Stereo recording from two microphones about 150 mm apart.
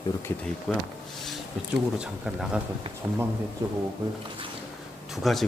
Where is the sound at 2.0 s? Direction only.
5° right (ahead or behind).